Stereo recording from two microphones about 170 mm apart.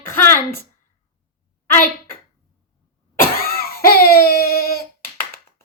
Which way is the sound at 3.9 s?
60° left (ahead or behind).